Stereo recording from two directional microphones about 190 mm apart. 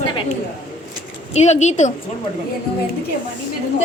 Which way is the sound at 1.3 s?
35° left (ahead or behind).